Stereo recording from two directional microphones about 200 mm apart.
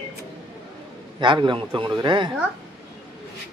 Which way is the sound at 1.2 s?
25° right (ahead or behind).